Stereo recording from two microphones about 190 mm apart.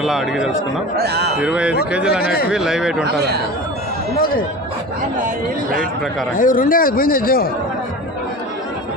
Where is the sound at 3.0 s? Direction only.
60° right (ahead or behind).